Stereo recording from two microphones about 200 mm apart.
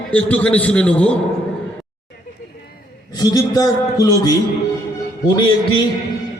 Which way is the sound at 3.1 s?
20° left (ahead or behind).